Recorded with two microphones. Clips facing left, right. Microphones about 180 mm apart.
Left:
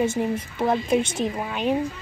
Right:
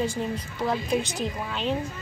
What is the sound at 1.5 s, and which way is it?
Speech, 10° left (ahead or behind).